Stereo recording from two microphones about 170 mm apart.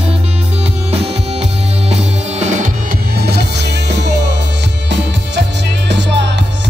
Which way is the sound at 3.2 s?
75° right (ahead or behind).